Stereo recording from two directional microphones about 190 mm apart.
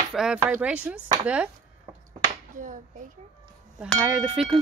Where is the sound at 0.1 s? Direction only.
Centre (ahead or behind).